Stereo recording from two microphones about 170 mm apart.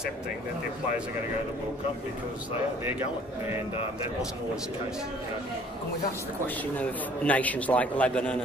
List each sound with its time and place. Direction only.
6.4 s a man's voice: 10° left (ahead or behind)